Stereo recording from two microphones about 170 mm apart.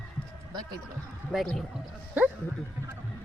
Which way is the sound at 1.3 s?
Centre (ahead or behind).